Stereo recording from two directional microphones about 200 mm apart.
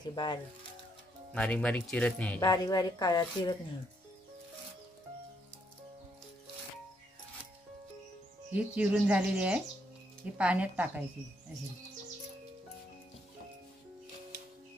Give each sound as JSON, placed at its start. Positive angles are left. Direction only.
{"t": 0.1, "sound": "a woman's voice", "side_deg": 20}
{"t": 1.3, "sound": "speech", "side_deg": 5}
{"t": 2.4, "sound": "a woman's voice", "side_deg": 20}
{"t": 8.5, "sound": "speech", "side_deg": -5}